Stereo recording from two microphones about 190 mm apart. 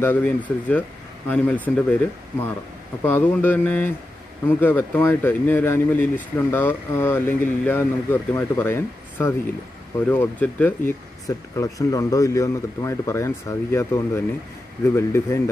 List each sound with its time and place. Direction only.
0.0 s speech: 10° left (ahead or behind)
3.0 s speech: 10° left (ahead or behind)